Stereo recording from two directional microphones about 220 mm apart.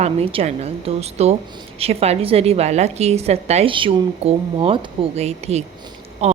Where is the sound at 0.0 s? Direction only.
25° right (ahead or behind).